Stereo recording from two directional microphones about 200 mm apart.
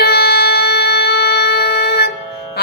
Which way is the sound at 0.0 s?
50° left (ahead or behind).